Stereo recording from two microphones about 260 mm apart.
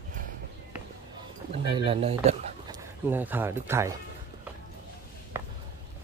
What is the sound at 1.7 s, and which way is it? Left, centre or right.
Speech, right.